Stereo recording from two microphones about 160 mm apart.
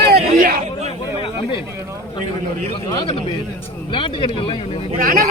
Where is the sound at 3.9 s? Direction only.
35° left (ahead or behind).